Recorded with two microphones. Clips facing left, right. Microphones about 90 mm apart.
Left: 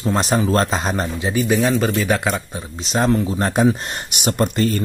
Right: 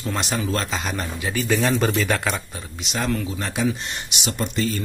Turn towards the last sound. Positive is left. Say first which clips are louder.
# left 6 dB
turn(degrees=50)  # may be behind; listen again after turning